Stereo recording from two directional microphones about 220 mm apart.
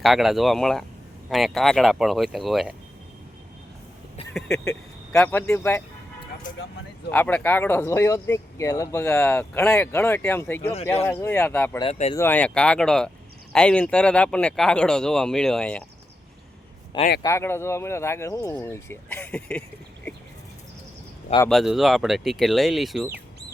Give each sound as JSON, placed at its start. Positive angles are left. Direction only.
{"t": 0.0, "sound": "speech", "side_deg": 0}
{"t": 4.6, "sound": "speech", "side_deg": 10}
{"t": 7.1, "sound": "speech", "side_deg": 5}
{"t": 11.8, "sound": "speech", "side_deg": 25}
{"t": 12.1, "sound": "speech", "side_deg": 10}
{"t": 17.2, "sound": "speech", "side_deg": 10}
{"t": 21.5, "sound": "speech", "side_deg": 0}